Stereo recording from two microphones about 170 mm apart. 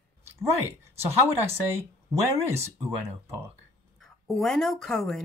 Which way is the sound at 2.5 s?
15° right (ahead or behind).